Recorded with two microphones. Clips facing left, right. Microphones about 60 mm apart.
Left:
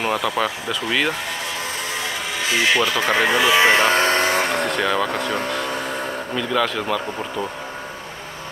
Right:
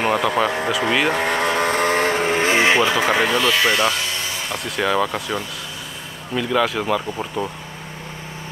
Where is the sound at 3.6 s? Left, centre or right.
Left.